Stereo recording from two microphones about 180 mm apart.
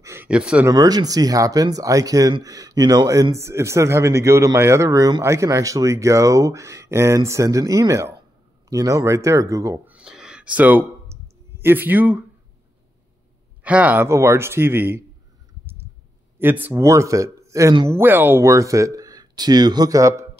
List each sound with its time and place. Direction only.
0.0 s a sound: 15° right (ahead or behind)
0.7 s speech: 20° right (ahead or behind)
13.6 s speech: 10° right (ahead or behind)
16.3 s speech: 10° right (ahead or behind)